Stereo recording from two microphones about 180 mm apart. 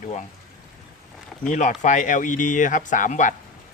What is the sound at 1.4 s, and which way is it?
Speech, 45° left (ahead or behind).